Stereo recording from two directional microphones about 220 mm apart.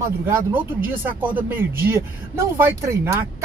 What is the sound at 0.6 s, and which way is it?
Speech, 10° right (ahead or behind).